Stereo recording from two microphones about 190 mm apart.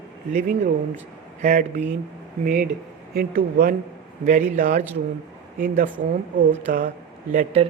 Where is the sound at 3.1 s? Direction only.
50° right (ahead or behind).